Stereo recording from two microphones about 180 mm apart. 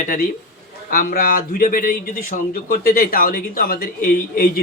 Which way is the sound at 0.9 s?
50° left (ahead or behind).